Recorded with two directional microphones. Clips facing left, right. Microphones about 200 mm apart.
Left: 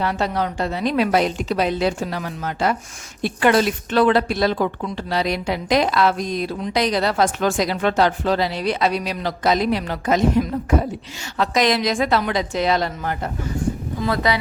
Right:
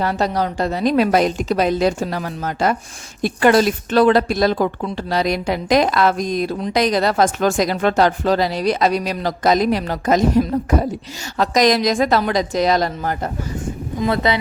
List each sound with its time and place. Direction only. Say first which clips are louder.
0.0 s a woman's voice: right 2 dB; 40° right (ahead or behind)
14.0 s speech: right 3 dB; 25° right (ahead or behind)